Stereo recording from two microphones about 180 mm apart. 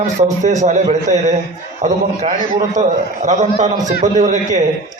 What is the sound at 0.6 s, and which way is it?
A man's voice, 40° right (ahead or behind).